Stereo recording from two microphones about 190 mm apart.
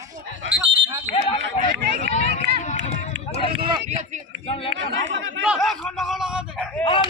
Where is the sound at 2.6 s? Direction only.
35° left (ahead or behind).